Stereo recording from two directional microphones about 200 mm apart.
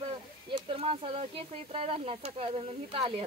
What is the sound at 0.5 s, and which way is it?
Speech, 25° right (ahead or behind).